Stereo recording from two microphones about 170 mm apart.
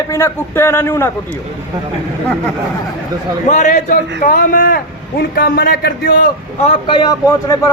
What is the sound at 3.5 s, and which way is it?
A man's voice, 45° left (ahead or behind).